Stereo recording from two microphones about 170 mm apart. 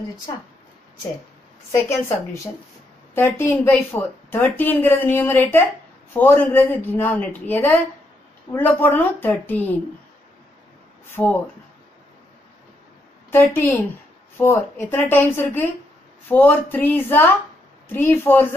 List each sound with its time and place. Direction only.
1.7 s speech: 15° left (ahead or behind)
11.1 s speech: 10° left (ahead or behind)
13.3 s speech: 10° left (ahead or behind)